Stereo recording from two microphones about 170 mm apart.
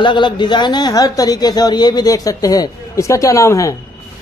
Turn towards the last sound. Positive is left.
turn(degrees=20)  # may be behind; listen again after turning